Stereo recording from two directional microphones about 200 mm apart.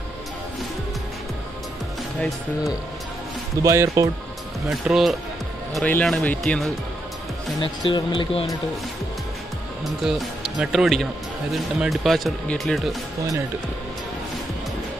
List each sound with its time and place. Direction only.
3.6 s speech: 15° right (ahead or behind)
4.6 s speech: centre (ahead or behind)
7.6 s speech: 20° left (ahead or behind)
10.0 s speech: centre (ahead or behind)